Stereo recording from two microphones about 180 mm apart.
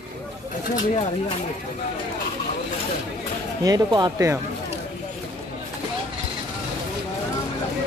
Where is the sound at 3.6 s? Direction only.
20° right (ahead or behind).